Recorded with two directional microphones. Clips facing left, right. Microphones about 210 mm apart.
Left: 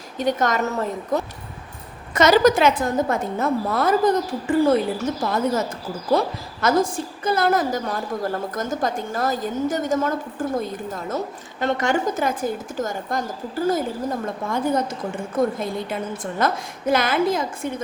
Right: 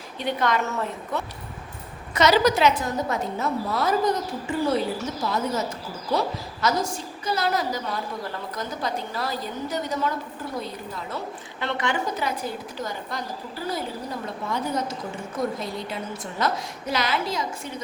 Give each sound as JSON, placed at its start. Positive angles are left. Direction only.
{"t": 0.2, "sound": "a woman's voice", "side_deg": 45}